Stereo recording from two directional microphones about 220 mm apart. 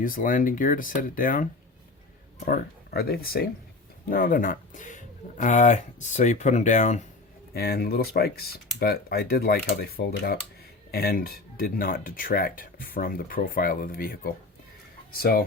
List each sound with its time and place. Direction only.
0.0 s speech: 40° left (ahead or behind)
2.5 s speech: 45° left (ahead or behind)
7.5 s speech: 45° left (ahead or behind)